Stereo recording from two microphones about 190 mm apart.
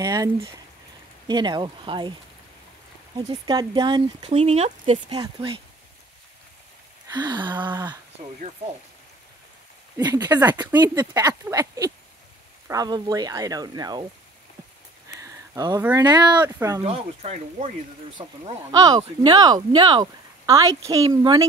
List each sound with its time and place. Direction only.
0.0 s speech: 20° right (ahead or behind)
3.2 s speech: 20° right (ahead or behind)
7.1 s speech: 20° right (ahead or behind)
9.9 s speech: 20° right (ahead or behind)
10.8 s speech: 20° right (ahead or behind)
15.1 s speech: 15° right (ahead or behind)
16.8 s speech: 35° right (ahead or behind)
18.7 s speech: 20° right (ahead or behind)